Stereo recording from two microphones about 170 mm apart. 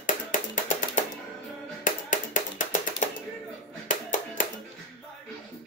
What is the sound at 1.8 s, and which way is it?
Tap, 50° left (ahead or behind).